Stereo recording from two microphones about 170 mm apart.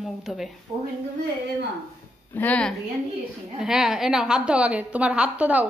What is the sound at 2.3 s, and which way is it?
Speech, 10° left (ahead or behind).